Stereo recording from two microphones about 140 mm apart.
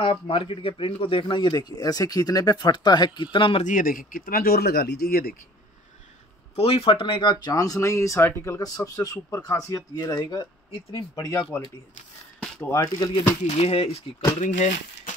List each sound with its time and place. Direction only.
0.0 s speech: 40° left (ahead or behind)
3.6 s speech: 80° left
6.5 s speech: 45° left (ahead or behind); by 11.6 s 20° left (ahead or behind)
12.7 s speech: 20° left (ahead or behind)
13.5 s speech: 45° left (ahead or behind)
14.4 s speech: 65° left (ahead or behind)